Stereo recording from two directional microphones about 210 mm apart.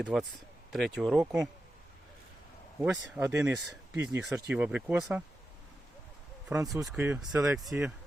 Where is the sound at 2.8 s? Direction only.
10° right (ahead or behind).